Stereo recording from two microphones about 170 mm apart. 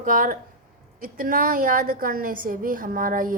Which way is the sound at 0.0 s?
50° right (ahead or behind).